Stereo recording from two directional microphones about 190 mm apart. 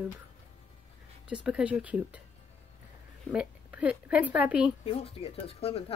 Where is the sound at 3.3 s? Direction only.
5° right (ahead or behind).